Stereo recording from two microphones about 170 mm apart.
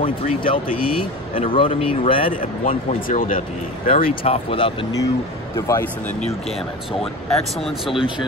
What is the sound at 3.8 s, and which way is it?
Speech, 35° left (ahead or behind).